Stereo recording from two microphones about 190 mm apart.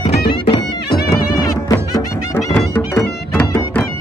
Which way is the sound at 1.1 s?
20° left (ahead or behind).